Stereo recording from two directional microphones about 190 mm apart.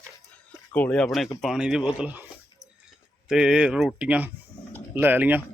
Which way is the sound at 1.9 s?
10° right (ahead or behind).